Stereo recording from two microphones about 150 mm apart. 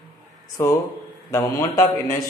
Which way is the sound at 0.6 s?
15° left (ahead or behind).